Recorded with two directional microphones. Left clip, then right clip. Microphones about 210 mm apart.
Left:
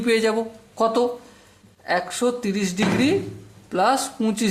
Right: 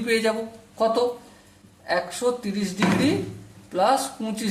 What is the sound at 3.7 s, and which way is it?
Speech, 40° left (ahead or behind).